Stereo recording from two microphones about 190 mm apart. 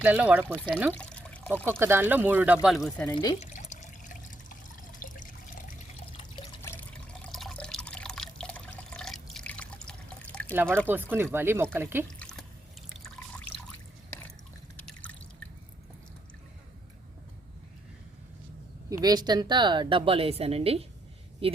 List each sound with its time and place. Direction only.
0.0 s speech: 5° right (ahead or behind)
0.7 s pour: centre (ahead or behind)
1.8 s speech: 10° right (ahead or behind)
3.4 s water: 40° left (ahead or behind)
6.1 s water: 25° left (ahead or behind)
6.6 s water: 10° left (ahead or behind)
9.3 s drip: 5° left (ahead or behind)
10.5 s speech: 10° right (ahead or behind)
12.2 s drip: 5° left (ahead or behind)
14.8 s drip: 5° left (ahead or behind)
18.9 s a woman's voice: 20° right (ahead or behind)